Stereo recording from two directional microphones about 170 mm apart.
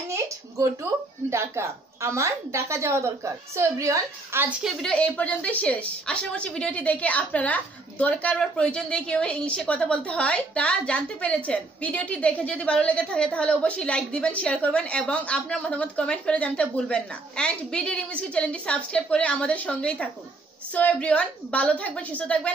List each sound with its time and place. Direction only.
1.3 s a woman's voice: 15° right (ahead or behind)
4.6 s a woman's voice: 5° left (ahead or behind)